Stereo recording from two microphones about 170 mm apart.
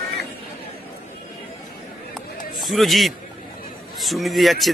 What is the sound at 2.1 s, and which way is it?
Run, centre (ahead or behind).